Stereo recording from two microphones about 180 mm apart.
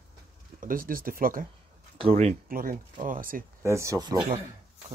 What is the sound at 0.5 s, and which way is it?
Speech, 50° right (ahead or behind).